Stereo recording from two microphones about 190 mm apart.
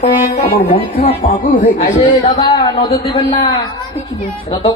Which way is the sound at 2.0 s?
25° left (ahead or behind).